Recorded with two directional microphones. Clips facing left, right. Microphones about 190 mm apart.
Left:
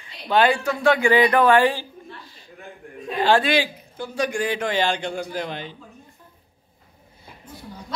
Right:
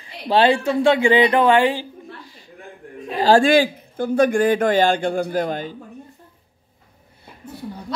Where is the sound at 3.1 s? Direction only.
40° right (ahead or behind).